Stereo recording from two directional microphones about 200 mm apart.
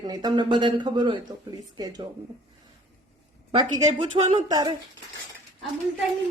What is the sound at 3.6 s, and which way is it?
Speech, 25° right (ahead or behind).